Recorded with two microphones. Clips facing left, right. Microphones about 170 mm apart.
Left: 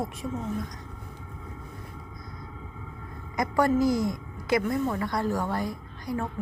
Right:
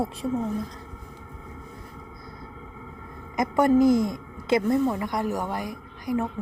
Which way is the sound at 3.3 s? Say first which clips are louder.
Right 4 dB; 20° right (ahead or behind).